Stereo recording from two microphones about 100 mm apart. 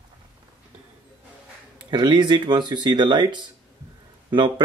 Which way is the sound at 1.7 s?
50° right (ahead or behind).